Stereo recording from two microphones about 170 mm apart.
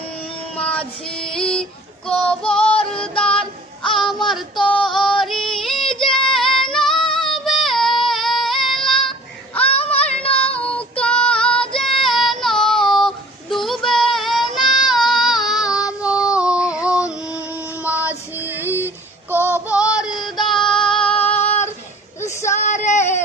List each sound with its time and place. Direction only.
0.5 s child singing: 5° left (ahead or behind)
4.7 s female singing: 5° left (ahead or behind)
5.2 s yodeling: centre (ahead or behind)
6.2 s female singing: centre (ahead or behind)
7.6 s child singing: centre (ahead or behind)
10.0 s child singing: 5° left (ahead or behind)
16.3 s a sound: 5° right (ahead or behind)
17.5 s music: 10° right (ahead or behind)
18.3 s female singing: 10° right (ahead or behind)
19.3 s child singing: 10° right (ahead or behind)
20.7 s female singing: 5° left (ahead or behind)
22.6 s female singing: 45° left (ahead or behind)